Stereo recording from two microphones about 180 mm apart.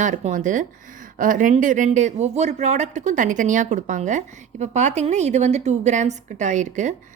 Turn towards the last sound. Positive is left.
turn(degrees=-40)  # may be behind; listen again after turning